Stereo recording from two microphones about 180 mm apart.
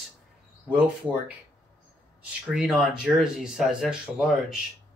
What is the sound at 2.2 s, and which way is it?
Speech, 5° right (ahead or behind).